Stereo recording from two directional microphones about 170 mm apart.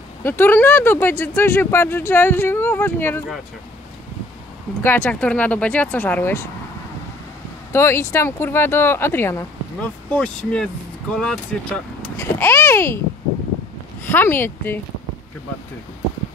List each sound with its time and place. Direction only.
0.2 s speech: 15° left (ahead or behind)
4.8 s speech: 10° left (ahead or behind)
7.7 s speech: 15° left (ahead or behind)
14.0 s speech: 10° left (ahead or behind)